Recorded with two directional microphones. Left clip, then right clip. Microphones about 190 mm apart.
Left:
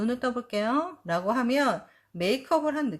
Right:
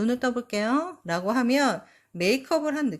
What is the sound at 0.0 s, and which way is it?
Speech, 40° right (ahead or behind).